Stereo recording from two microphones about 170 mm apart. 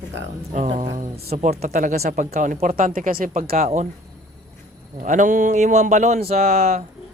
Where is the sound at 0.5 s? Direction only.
45° right (ahead or behind).